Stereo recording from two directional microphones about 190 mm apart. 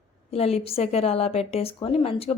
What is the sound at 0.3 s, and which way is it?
A woman's voice, 30° left (ahead or behind).